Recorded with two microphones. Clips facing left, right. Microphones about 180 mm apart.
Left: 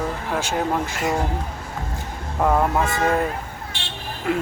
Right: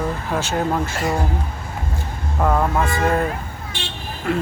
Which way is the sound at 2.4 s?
10° left (ahead or behind).